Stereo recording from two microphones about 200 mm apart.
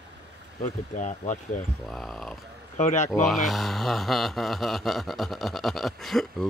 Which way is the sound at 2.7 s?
35° left (ahead or behind).